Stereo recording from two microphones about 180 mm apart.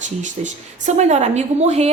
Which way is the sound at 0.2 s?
40° right (ahead or behind).